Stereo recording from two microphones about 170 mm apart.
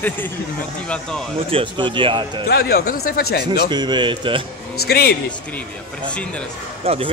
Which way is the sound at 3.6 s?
25° right (ahead or behind).